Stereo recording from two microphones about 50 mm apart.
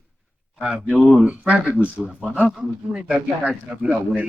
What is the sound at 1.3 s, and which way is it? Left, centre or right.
Speech, right.